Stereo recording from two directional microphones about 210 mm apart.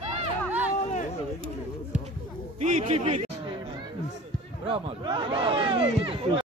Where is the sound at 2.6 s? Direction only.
35° right (ahead or behind).